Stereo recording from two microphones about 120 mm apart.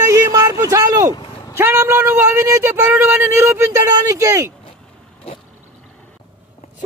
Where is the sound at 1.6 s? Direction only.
20° right (ahead or behind).